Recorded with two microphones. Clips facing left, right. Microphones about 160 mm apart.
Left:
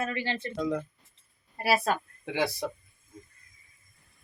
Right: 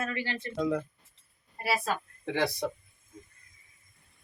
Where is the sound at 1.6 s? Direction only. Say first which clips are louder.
Left 5 dB; 90° left.